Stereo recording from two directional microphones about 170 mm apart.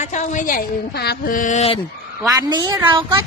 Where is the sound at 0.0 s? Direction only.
45° left (ahead or behind).